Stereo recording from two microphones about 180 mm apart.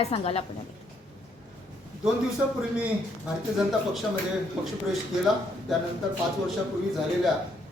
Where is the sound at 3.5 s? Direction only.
Centre (ahead or behind).